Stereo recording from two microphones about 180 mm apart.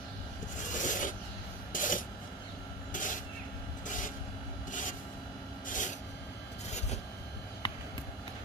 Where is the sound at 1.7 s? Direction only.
45° left (ahead or behind).